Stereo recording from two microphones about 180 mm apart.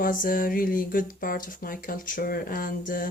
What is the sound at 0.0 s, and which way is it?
A woman's voice, 50° left (ahead or behind).